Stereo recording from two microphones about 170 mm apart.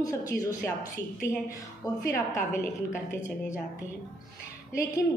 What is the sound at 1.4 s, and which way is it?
Speech, 20° left (ahead or behind).